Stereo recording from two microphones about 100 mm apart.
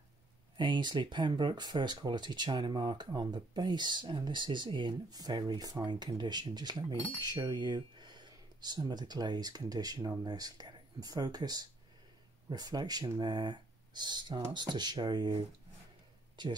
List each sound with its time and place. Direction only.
0.6 s speech: 50° right (ahead or behind)